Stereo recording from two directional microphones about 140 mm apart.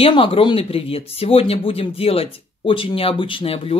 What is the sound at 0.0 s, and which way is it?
Speech, 40° left (ahead or behind).